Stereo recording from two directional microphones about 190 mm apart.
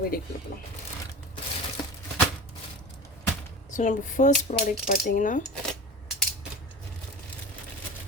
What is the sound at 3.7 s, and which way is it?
A woman's voice, 40° left (ahead or behind).